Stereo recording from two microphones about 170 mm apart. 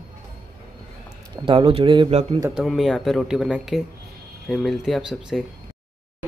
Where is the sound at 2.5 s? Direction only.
Centre (ahead or behind).